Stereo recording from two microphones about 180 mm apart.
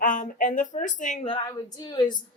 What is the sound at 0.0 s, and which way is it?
A woman's voice, 45° left (ahead or behind).